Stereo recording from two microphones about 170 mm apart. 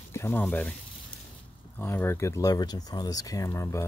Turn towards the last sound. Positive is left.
turn(degrees=15)  # may be behind; listen again after turning